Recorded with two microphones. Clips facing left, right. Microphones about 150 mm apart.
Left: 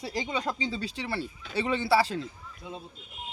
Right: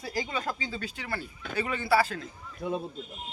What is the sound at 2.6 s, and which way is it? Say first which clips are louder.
Speech: right 10 dB; 60° right (ahead or behind).